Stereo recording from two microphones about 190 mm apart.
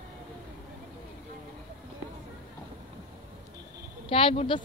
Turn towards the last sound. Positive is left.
turn(degrees=30)  # may be behind; listen again after turning